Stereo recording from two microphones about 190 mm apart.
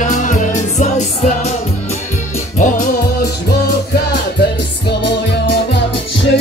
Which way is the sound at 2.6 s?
40° left (ahead or behind).